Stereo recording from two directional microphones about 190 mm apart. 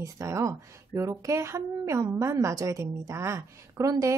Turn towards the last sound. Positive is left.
turn(degrees=-15)  # may be behind; listen again after turning